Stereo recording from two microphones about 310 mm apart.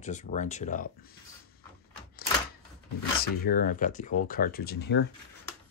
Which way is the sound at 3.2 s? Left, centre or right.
Left.